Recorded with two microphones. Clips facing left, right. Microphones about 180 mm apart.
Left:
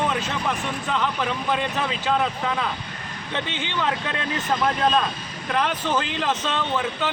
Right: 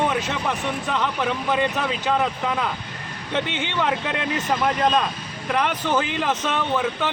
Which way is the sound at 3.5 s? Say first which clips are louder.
Right 2 dB; 15° right (ahead or behind).